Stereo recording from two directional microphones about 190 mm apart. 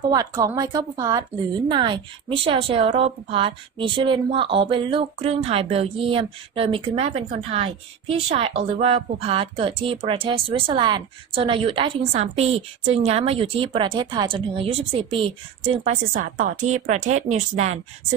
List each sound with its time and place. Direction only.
0.1 s a woman's voice: 20° right (ahead or behind)
15.8 s a woman's voice: 40° right (ahead or behind)